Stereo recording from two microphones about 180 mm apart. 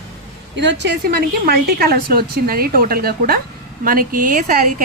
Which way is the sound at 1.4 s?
55° right (ahead or behind).